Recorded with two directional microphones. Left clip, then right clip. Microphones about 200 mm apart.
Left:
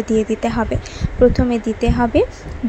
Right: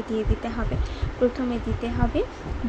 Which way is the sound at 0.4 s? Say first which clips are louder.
Left 11 dB; 40° left (ahead or behind).